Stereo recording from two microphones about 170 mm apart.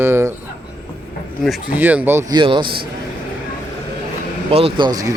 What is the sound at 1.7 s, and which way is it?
Speech, 10° right (ahead or behind).